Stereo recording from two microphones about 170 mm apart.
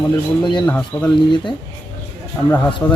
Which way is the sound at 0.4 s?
25° left (ahead or behind).